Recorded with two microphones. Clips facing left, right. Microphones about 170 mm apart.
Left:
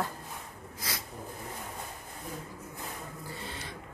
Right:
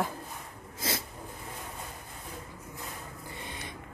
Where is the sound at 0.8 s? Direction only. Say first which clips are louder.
Right 6 dB; 25° right (ahead or behind).